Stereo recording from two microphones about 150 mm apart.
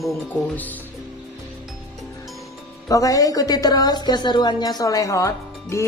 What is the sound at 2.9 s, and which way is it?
Speech, 25° left (ahead or behind).